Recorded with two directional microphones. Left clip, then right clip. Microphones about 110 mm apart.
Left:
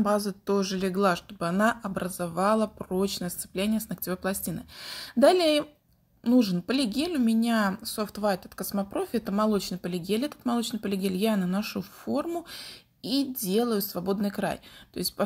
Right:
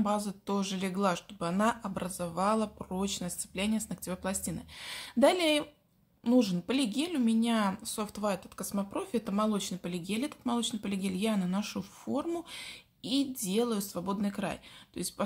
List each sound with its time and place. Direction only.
0.3 s speech: 25° left (ahead or behind); by 15.2 s 40° left (ahead or behind)